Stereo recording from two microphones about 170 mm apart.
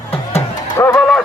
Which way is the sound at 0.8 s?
15° left (ahead or behind).